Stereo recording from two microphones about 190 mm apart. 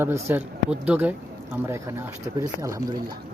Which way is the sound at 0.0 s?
15° right (ahead or behind).